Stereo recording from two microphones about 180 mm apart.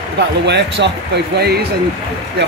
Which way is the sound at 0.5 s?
70° right (ahead or behind).